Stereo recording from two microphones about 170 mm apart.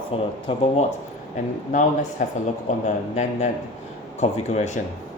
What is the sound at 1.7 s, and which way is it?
Speech, 45° left (ahead or behind).